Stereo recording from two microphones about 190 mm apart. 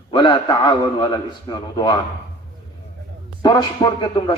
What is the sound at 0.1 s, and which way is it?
A man's voice, 25° left (ahead or behind).